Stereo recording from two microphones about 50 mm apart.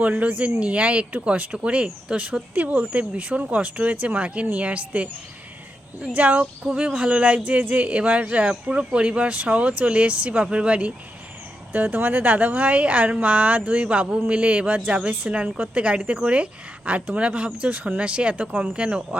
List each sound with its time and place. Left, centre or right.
0.2 s speech: right
6.1 s speech: right
11.7 s speech: right; by 19.0 s centre